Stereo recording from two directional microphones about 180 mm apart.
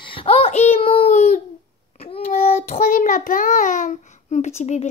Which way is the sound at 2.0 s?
30° left (ahead or behind).